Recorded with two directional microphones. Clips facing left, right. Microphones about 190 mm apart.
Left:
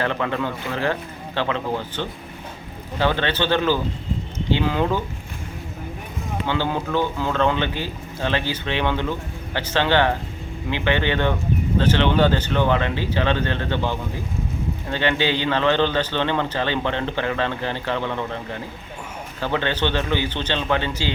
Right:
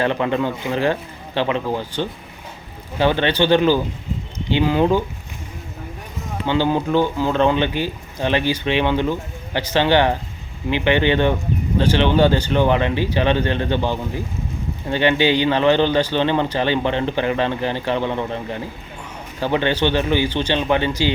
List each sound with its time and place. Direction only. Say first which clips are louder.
0.0 s a man's voice: right 4 dB; 20° right (ahead or behind)
6.5 s a man's voice: right 6 dB; 15° right (ahead or behind)